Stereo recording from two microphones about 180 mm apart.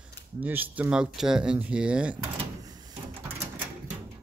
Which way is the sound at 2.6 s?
20° right (ahead or behind).